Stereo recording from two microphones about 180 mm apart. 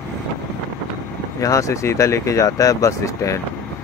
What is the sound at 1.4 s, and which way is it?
Speech, 20° left (ahead or behind).